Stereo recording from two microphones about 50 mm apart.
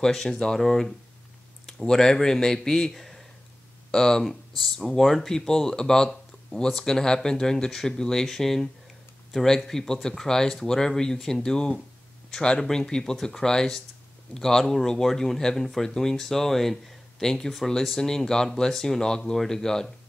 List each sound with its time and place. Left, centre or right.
0.0 s a man's voice: centre